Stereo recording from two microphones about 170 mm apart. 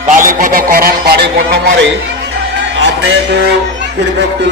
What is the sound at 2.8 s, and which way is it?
Music, 85° right.